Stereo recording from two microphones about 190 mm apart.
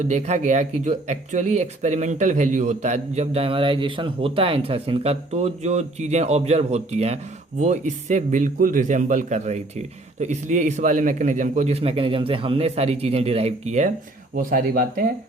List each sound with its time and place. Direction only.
0.0 s speech: 35° right (ahead or behind)
14.3 s speech: 50° right (ahead or behind)